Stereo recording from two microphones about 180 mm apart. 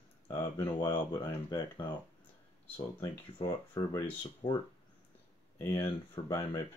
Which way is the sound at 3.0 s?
20° left (ahead or behind).